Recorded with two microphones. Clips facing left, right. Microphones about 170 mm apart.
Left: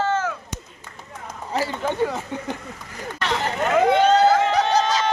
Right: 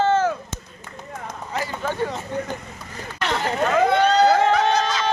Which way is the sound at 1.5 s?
35° left (ahead or behind).